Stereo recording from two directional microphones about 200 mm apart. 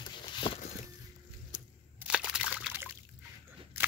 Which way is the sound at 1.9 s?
5° right (ahead or behind).